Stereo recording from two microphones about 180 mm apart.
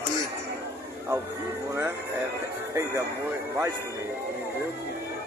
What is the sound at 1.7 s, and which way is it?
Speech, 15° right (ahead or behind).